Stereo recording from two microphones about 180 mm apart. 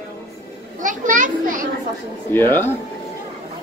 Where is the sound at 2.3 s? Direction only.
10° left (ahead or behind).